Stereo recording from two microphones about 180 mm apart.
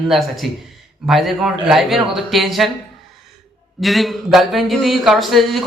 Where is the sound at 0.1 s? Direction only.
Centre (ahead or behind).